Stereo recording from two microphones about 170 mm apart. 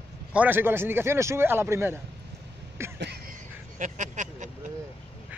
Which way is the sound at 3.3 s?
50° right (ahead or behind).